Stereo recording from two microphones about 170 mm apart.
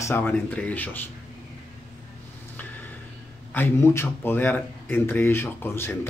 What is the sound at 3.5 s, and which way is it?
Speech, 15° left (ahead or behind).